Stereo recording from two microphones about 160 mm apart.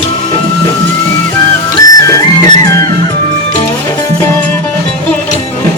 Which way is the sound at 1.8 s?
20° left (ahead or behind).